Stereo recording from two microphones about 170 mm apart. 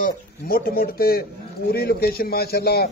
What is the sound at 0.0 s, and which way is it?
A man's voice, 55° left (ahead or behind).